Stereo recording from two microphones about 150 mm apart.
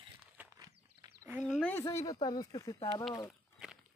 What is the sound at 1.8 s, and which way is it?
Speech, 25° left (ahead or behind).